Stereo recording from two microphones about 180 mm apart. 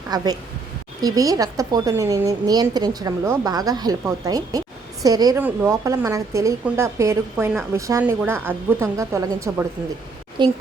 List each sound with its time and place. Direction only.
0.1 s a woman's voice: 20° right (ahead or behind)